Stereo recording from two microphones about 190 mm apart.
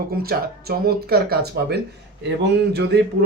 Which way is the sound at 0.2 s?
55° right (ahead or behind).